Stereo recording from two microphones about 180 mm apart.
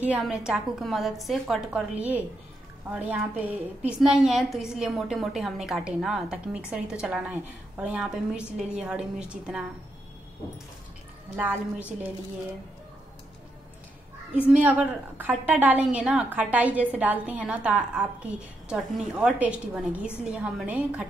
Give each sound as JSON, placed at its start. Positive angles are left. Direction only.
{"t": 0.0, "sound": "a woman's voice", "side_deg": -5}
{"t": 11.3, "sound": "a woman's voice", "side_deg": -10}
{"t": 14.3, "sound": "a woman's voice", "side_deg": -10}